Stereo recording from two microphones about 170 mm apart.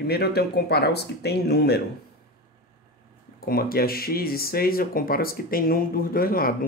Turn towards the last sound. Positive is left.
turn(degrees=60)  # may be behind; listen again after turning